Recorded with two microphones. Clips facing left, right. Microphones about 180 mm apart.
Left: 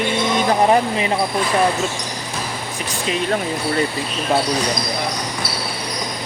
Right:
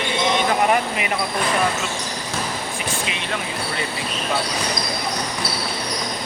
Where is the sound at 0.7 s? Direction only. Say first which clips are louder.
Left 4 dB; 30° left (ahead or behind).